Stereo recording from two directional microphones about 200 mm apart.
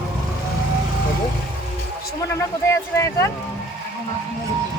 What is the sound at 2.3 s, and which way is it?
Speech, 15° left (ahead or behind).